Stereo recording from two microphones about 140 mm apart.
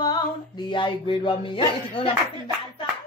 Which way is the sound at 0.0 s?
30° left (ahead or behind).